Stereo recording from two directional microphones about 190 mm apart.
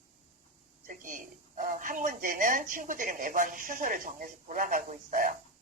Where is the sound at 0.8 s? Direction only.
45° right (ahead or behind).